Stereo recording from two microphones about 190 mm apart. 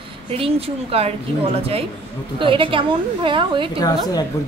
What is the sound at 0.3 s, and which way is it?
A woman's voice, 30° right (ahead or behind).